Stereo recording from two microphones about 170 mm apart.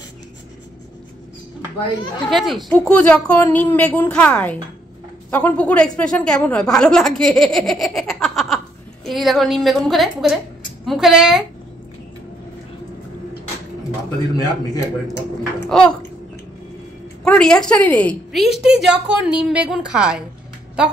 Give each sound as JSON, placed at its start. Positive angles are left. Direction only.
{"t": 2.2, "sound": "a woman's voice", "side_deg": 0}
{"t": 7.5, "sound": "giggle", "side_deg": 0}
{"t": 9.0, "sound": "a woman's voice", "side_deg": 0}
{"t": 14.4, "sound": "a man's voice", "side_deg": 20}
{"t": 15.7, "sound": "a woman's voice", "side_deg": 5}
{"t": 17.2, "sound": "a woman's voice", "side_deg": 5}